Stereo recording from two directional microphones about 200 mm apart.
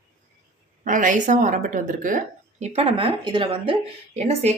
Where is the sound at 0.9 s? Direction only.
40° right (ahead or behind).